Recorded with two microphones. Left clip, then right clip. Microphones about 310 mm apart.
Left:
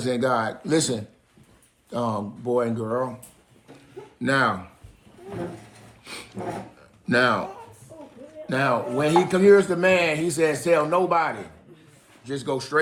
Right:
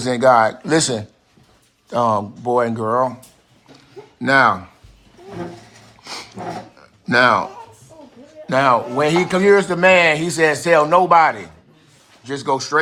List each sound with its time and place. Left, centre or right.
0.0 s a man's voice: right
4.2 s speech: centre
6.0 s a sound: centre
7.0 s speech: centre
8.4 s a man's voice: right